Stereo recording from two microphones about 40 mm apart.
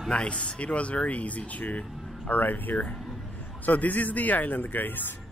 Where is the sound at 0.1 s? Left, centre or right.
Left.